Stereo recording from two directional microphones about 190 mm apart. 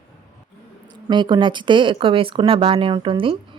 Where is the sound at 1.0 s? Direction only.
25° right (ahead or behind).